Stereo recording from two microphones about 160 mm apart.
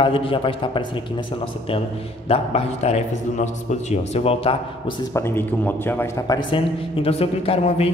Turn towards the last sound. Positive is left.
turn(degrees=40)  # may be behind; listen again after turning